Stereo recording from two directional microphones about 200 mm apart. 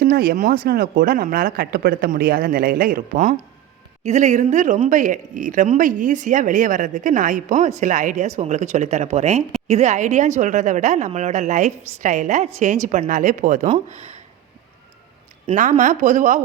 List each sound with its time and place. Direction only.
0.0 s a woman's voice: 50° right (ahead or behind)
15.5 s speech: 30° right (ahead or behind)
15.8 s a woman's voice: 40° right (ahead or behind)